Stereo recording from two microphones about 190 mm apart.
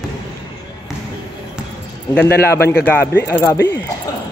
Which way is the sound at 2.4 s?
15° left (ahead or behind).